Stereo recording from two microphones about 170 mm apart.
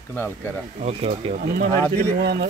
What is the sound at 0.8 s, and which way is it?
Speech, 40° right (ahead or behind).